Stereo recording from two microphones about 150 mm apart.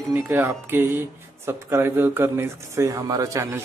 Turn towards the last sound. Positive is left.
turn(degrees=-20)  # may be behind; listen again after turning